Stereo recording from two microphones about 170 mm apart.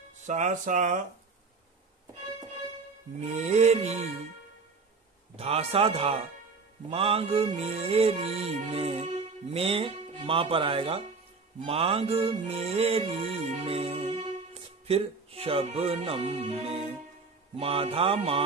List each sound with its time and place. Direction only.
0.2 s speech: 45° right (ahead or behind)
3.2 s music: 40° right (ahead or behind)
5.3 s music: 35° right (ahead or behind)